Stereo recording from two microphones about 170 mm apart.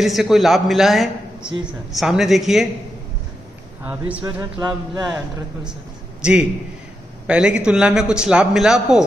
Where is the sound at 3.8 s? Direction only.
15° right (ahead or behind).